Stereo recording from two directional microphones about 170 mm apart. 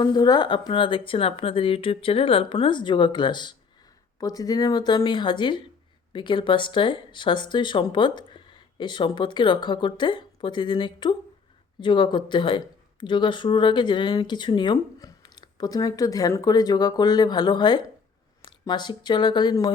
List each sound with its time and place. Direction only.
0.0 s speech: 25° left (ahead or behind)